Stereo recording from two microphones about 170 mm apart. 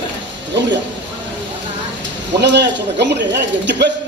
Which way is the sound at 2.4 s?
90° right.